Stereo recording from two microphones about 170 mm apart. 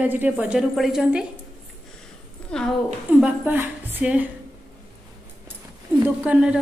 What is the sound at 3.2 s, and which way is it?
A woman's voice, 10° right (ahead or behind).